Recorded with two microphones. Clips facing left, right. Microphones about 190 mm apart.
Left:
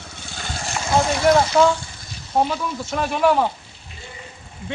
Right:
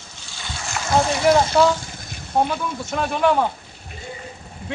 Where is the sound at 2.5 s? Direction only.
Centre (ahead or behind).